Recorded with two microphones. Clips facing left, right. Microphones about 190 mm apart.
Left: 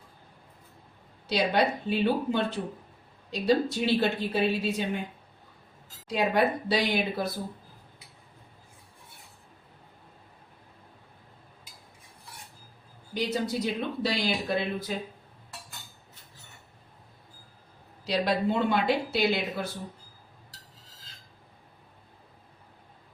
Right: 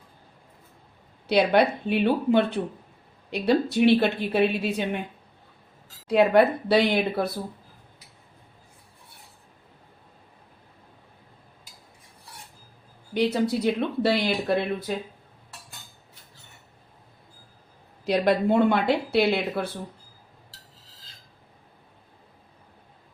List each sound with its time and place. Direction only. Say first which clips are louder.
1.3 s speech: right 5 dB; 60° right (ahead or behind)
6.1 s speech: right 7 dB; 60° right (ahead or behind)
13.1 s speech: right 6 dB; 60° right (ahead or behind)
18.0 s speech: right 5 dB; 55° right (ahead or behind)